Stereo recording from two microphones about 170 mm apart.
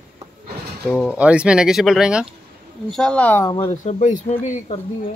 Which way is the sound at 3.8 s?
45° left (ahead or behind).